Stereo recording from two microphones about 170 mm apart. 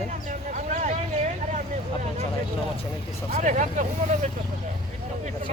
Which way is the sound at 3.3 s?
45° right (ahead or behind).